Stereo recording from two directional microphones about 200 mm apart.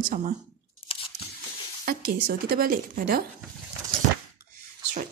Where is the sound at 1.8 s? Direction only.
45° right (ahead or behind).